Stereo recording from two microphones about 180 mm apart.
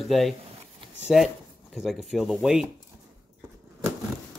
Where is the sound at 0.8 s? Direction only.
30° right (ahead or behind).